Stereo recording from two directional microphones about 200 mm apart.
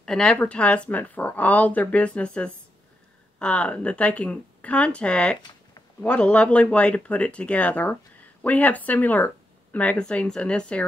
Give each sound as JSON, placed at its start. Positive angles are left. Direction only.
{"t": 0.0, "sound": "speech", "side_deg": 5}